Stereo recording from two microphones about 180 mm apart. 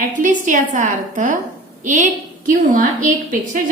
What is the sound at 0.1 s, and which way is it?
A woman's voice, 45° right (ahead or behind).